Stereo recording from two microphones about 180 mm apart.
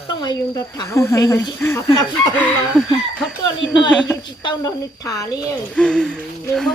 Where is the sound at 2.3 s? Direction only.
10° left (ahead or behind).